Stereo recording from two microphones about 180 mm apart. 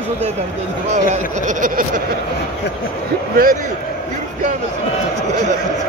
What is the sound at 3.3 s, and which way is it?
Speech, 50° right (ahead or behind).